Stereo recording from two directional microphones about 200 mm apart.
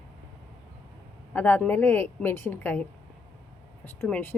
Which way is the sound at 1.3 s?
10° left (ahead or behind).